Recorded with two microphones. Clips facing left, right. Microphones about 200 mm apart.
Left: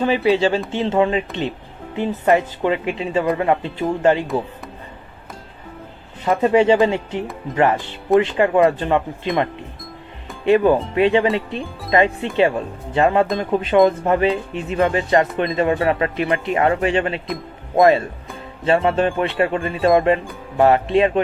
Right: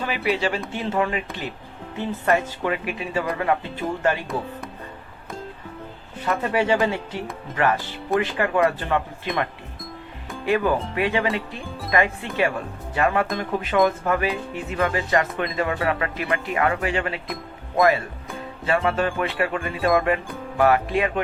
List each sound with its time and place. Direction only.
0.0 s speech: 25° left (ahead or behind)
6.2 s speech: 25° left (ahead or behind)